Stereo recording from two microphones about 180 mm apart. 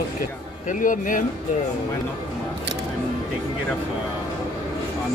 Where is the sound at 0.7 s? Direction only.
45° left (ahead or behind).